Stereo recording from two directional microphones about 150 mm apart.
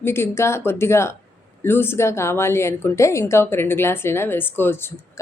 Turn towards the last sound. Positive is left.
turn(degrees=15)  # may be behind; listen again after turning